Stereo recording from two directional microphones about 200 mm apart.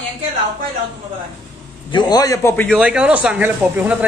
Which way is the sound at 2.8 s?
5° right (ahead or behind).